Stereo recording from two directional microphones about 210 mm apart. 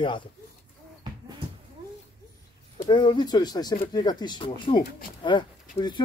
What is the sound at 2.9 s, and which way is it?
Speech, 20° left (ahead or behind).